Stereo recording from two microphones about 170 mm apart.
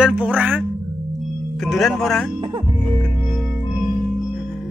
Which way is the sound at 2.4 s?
25° right (ahead or behind).